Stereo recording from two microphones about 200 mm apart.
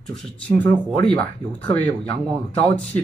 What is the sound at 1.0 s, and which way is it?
Speech, 5° left (ahead or behind).